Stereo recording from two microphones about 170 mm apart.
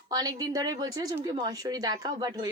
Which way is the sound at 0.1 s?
20° right (ahead or behind).